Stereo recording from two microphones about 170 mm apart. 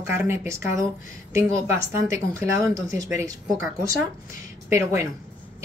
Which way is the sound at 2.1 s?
15° right (ahead or behind).